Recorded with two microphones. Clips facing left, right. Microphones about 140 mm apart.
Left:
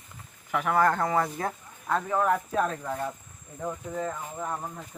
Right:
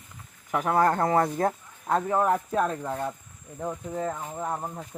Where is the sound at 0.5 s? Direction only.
30° right (ahead or behind).